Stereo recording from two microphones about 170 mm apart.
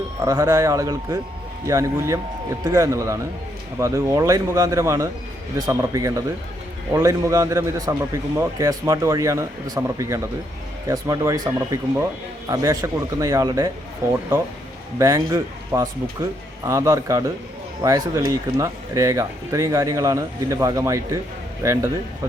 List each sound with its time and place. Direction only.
0.2 s speech: 20° right (ahead or behind)
12.5 s speech: 20° right (ahead or behind)
14.9 s speech: 20° right (ahead or behind)